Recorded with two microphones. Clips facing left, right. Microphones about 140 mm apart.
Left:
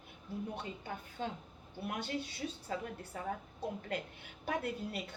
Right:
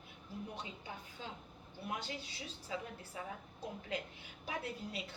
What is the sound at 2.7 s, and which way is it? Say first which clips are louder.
A woman's voice: left 3 dB; 55° left (ahead or behind).